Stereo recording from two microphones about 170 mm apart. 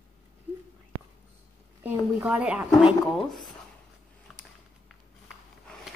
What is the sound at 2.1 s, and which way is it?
Speech, 5° right (ahead or behind).